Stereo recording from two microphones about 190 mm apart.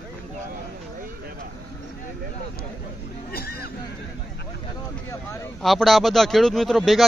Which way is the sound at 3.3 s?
55° left (ahead or behind).